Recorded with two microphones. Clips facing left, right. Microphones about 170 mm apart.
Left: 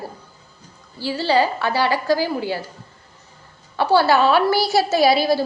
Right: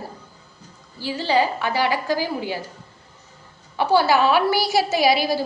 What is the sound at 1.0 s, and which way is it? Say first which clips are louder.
A woman's voice: left 2 dB; 15° right (ahead or behind).